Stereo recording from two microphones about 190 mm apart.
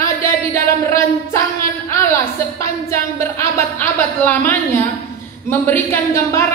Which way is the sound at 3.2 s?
15° left (ahead or behind).